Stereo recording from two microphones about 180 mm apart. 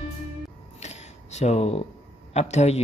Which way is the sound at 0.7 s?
40° left (ahead or behind).